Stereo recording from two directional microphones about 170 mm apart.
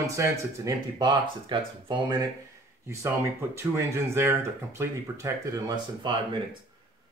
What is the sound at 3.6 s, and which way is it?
Speech, 15° right (ahead or behind).